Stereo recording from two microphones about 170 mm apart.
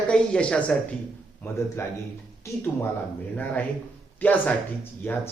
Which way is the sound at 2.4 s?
15° left (ahead or behind).